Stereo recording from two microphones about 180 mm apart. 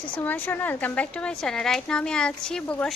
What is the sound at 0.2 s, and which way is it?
A woman's voice, 10° left (ahead or behind).